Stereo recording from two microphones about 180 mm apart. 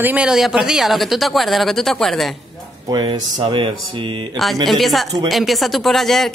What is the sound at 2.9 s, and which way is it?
Speech, 20° right (ahead or behind).